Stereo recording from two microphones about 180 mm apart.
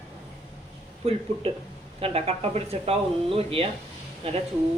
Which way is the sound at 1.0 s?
30° right (ahead or behind).